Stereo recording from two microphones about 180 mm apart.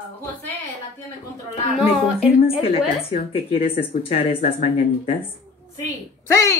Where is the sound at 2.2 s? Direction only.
35° left (ahead or behind).